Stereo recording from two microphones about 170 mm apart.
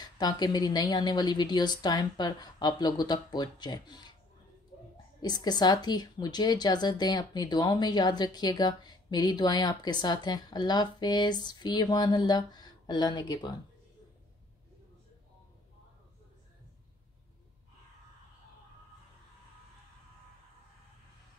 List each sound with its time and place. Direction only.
0.0 s a woman's voice: 25° left (ahead or behind)
5.2 s a woman's voice: 25° left (ahead or behind)